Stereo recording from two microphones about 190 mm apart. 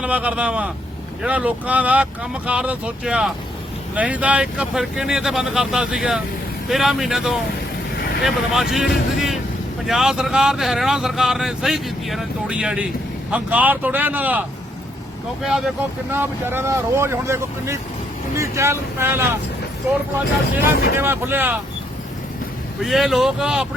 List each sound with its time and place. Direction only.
0.0 s speech: 5° right (ahead or behind)
15.4 s speech: 5° right (ahead or behind)
20.6 s speech: 55° left (ahead or behind)
20.9 s speech: 10° right (ahead or behind)
22.8 s speech: centre (ahead or behind)